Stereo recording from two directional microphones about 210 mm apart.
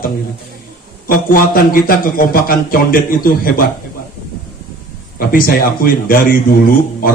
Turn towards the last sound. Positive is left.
turn(degrees=40)  # may be behind; listen again after turning